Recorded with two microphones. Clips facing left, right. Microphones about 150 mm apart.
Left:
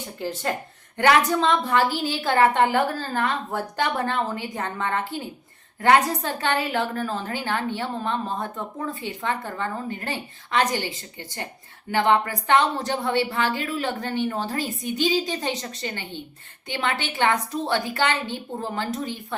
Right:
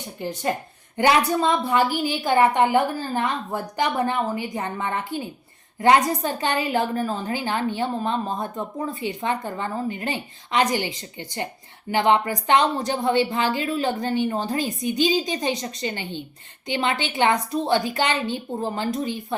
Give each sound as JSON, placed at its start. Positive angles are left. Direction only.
{"t": 0.9, "sound": "a woman's voice", "side_deg": -10}